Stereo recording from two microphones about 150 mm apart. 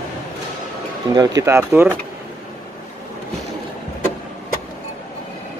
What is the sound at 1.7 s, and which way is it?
Speech, 10° right (ahead or behind).